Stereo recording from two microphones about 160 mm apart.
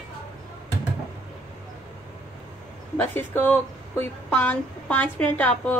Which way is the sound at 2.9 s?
10° left (ahead or behind).